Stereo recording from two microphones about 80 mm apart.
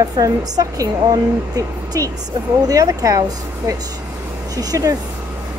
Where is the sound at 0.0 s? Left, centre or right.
Right.